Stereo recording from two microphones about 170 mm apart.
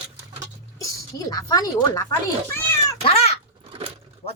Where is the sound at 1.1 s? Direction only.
20° left (ahead or behind).